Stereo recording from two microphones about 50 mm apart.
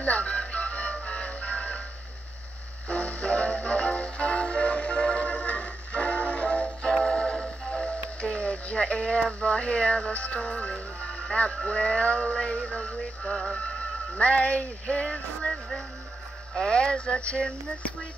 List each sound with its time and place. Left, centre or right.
0.0 s music: left
2.9 s music: left
11.5 s synthetic singing: left
15.4 s speech: centre
16.5 s synthetic singing: centre